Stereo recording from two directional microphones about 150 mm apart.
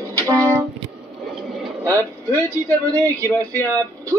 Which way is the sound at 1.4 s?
Centre (ahead or behind).